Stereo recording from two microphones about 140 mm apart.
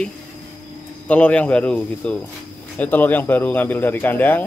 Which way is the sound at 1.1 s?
10° left (ahead or behind).